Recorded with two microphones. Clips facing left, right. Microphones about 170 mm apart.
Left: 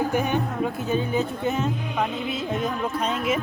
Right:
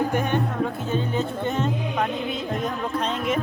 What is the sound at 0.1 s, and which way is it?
Speech, 10° left (ahead or behind).